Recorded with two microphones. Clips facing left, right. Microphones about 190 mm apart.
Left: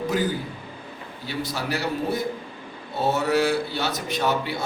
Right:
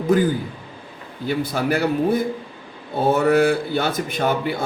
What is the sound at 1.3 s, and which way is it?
A man's voice, 55° right (ahead or behind).